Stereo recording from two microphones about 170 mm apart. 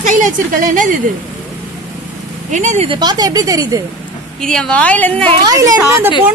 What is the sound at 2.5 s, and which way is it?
Speech, 45° right (ahead or behind).